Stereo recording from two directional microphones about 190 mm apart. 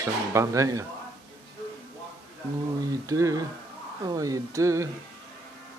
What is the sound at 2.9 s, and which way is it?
Speech, 15° right (ahead or behind).